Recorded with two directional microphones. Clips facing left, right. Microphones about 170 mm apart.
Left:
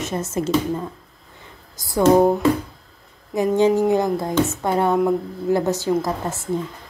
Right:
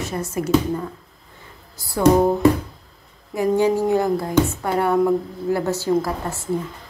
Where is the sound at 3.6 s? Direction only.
20° left (ahead or behind).